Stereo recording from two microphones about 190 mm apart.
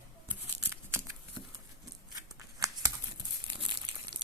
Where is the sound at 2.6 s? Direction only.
20° right (ahead or behind).